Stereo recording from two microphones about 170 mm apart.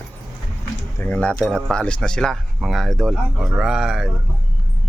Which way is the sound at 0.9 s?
10° left (ahead or behind).